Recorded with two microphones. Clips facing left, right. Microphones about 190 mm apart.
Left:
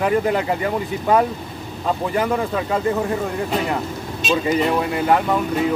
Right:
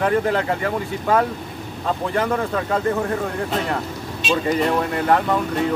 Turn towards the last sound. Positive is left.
turn(degrees=5)  # may be behind; listen again after turning